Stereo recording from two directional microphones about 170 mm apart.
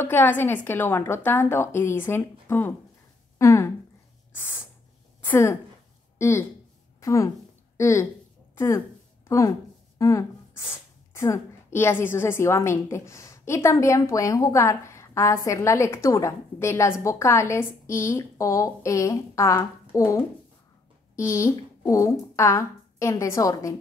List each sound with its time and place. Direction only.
0.0 s a woman's voice: 10° left (ahead or behind)
4.3 s owl: 10° left (ahead or behind)
5.2 s a woman's voice: 15° left (ahead or behind)
9.9 s a sound: 20° left (ahead or behind)
11.1 s a woman's voice: 15° left (ahead or behind)